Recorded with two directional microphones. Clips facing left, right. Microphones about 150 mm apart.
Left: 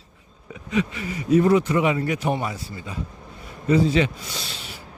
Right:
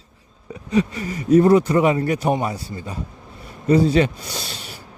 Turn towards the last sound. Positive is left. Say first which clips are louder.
# right 3 dB
turn(degrees=-40)  # may be behind; listen again after turning